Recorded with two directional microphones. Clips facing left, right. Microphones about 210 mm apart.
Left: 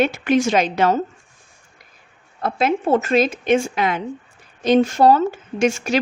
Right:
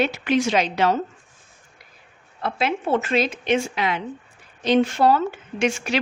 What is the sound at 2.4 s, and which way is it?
A woman's voice, 45° left (ahead or behind).